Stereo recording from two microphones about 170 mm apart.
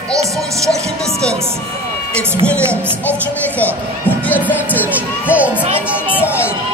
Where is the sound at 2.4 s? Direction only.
5° left (ahead or behind).